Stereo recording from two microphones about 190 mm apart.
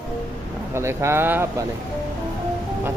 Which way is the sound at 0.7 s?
15° right (ahead or behind).